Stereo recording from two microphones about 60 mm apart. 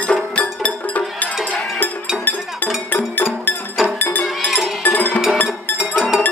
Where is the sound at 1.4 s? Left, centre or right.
Left.